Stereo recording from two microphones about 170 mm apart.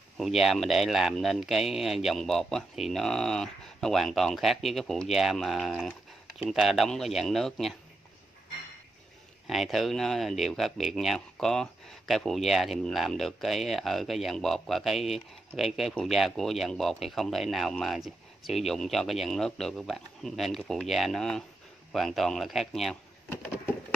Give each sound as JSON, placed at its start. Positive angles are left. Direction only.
{"t": 0.2, "sound": "speech", "side_deg": 0}
{"t": 9.5, "sound": "speech", "side_deg": 0}